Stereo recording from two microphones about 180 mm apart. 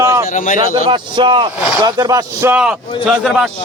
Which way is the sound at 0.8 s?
25° right (ahead or behind).